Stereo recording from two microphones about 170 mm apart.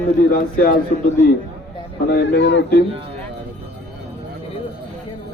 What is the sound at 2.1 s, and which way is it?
Speech, 80° left.